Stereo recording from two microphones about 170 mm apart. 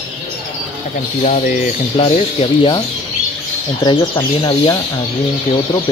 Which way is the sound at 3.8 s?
25° left (ahead or behind).